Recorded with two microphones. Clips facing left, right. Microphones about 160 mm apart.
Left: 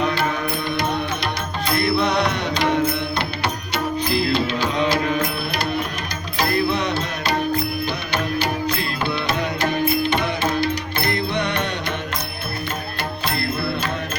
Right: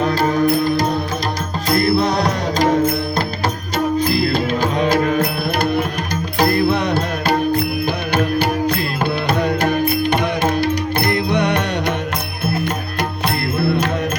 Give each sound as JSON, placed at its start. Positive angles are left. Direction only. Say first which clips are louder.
{"t": 0.0, "sound": "music", "louder": "right 6 dB", "side_deg": -35}
{"t": 6.4, "sound": "music", "louder": "right 4 dB", "side_deg": -55}